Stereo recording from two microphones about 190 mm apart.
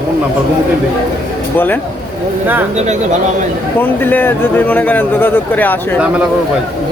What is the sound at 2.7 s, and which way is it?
Speech, 40° right (ahead or behind).